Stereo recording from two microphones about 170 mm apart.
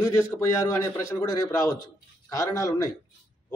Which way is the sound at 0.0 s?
15° left (ahead or behind).